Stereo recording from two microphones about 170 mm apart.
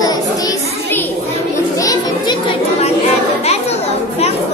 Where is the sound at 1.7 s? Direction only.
25° left (ahead or behind).